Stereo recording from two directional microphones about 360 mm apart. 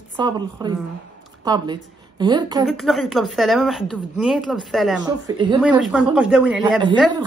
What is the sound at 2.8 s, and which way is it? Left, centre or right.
A woman's voice, centre.